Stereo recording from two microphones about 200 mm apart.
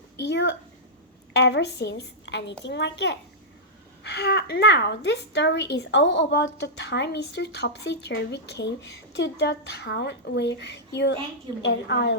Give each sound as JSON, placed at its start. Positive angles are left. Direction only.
{"t": 0.2, "sound": "a woman's voice", "side_deg": 60}